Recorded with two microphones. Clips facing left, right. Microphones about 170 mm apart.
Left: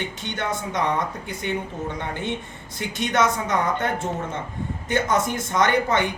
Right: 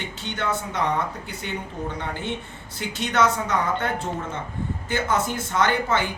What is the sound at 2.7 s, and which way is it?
Speech, 20° left (ahead or behind).